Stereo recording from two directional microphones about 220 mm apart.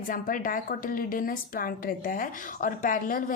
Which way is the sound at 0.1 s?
40° left (ahead or behind).